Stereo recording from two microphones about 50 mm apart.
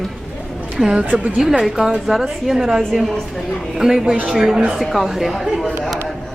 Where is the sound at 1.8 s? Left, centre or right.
Centre.